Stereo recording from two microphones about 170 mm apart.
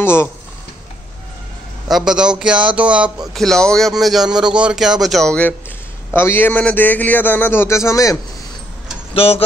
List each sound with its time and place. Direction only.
0.0 s speech: 15° left (ahead or behind)
1.9 s a man's voice: 5° right (ahead or behind); by 8.2 s 20° left (ahead or behind)
9.1 s speech: 35° left (ahead or behind)